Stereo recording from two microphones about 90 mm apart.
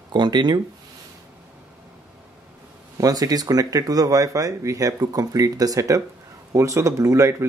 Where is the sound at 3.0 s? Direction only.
45° right (ahead or behind).